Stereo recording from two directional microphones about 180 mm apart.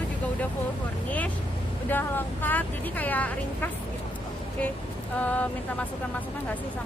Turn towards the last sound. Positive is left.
turn(degrees=10)  # may be behind; listen again after turning